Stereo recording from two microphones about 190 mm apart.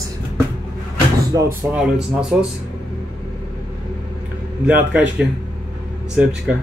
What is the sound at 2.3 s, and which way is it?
Speech, 5° right (ahead or behind).